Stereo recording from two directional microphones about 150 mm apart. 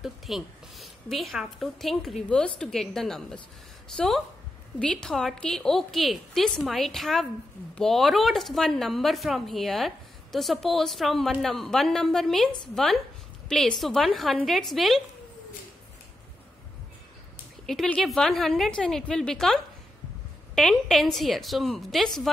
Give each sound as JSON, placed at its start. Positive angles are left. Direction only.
{"t": 0.0, "sound": "a woman's voice", "side_deg": 0}
{"t": 17.6, "sound": "speech", "side_deg": 5}